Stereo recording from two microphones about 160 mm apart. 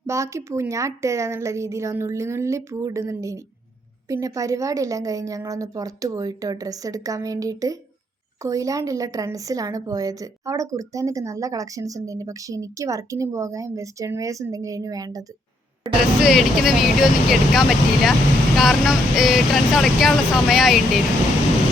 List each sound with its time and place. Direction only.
0.1 s a woman's voice: 20° right (ahead or behind)
16.2 s speech: centre (ahead or behind)